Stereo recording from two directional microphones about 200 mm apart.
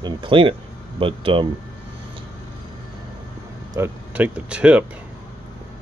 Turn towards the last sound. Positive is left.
turn(degrees=-5)  # may be behind; listen again after turning